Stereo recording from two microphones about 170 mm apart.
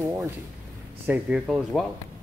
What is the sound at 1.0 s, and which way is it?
Speech, 5° right (ahead or behind).